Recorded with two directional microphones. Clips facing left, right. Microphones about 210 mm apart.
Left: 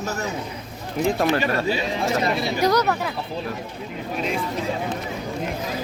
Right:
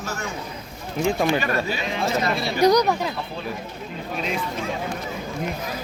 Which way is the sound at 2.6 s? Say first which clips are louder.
Right 4 dB; 15° right (ahead or behind).